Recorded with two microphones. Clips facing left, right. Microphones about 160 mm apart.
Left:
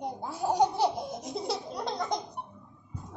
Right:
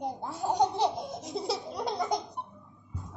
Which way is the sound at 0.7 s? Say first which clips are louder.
Left 1 dB; 20° right (ahead or behind).